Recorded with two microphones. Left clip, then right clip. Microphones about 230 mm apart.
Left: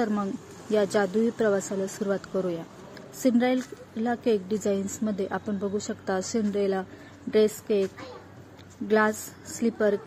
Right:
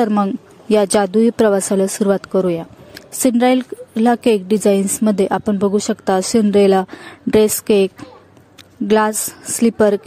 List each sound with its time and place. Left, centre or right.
0.0 s speech: right